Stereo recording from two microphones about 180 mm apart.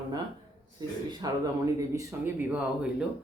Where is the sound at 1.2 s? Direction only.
20° right (ahead or behind).